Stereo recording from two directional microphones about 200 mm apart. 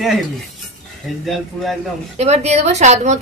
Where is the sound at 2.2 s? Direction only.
35° right (ahead or behind).